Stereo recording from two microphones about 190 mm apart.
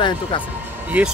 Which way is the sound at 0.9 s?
5° right (ahead or behind).